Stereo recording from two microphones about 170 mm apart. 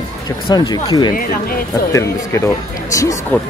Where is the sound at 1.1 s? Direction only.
60° left (ahead or behind).